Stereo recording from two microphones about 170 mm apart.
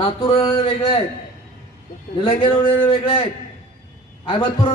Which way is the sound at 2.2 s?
30° left (ahead or behind).